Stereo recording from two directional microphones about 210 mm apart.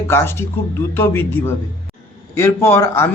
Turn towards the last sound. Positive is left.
turn(degrees=10)  # may be behind; listen again after turning